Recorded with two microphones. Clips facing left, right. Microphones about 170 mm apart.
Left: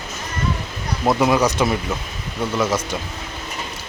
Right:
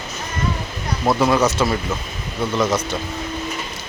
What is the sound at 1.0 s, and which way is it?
Speech, 15° left (ahead or behind).